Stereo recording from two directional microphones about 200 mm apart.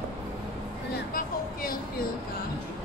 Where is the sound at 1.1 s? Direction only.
45° left (ahead or behind).